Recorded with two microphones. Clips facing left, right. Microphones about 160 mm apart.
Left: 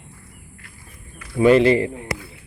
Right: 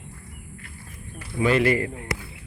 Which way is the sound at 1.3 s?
30° left (ahead or behind).